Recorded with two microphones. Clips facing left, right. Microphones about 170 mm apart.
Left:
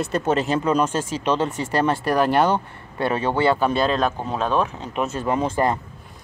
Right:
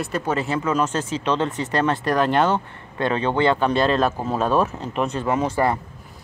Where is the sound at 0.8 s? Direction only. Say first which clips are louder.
Left 1 dB; 10° left (ahead or behind); by 4.9 s 5° right (ahead or behind).